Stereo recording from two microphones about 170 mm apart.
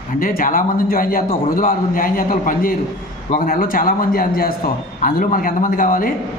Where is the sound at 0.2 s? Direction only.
55° left (ahead or behind).